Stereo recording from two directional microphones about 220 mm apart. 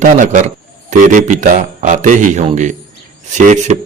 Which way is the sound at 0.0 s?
35° right (ahead or behind).